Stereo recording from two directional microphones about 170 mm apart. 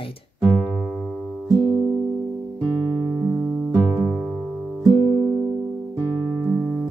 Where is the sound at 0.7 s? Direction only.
Centre (ahead or behind).